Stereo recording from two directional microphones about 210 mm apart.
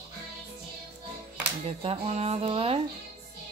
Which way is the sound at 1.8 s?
30° right (ahead or behind).